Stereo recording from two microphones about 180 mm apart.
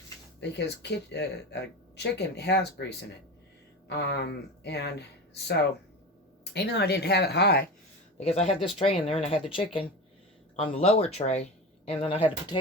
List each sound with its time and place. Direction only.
0.3 s speech: 70° left (ahead or behind)
8.2 s speech: 35° left (ahead or behind)
10.6 s speech: 35° left (ahead or behind)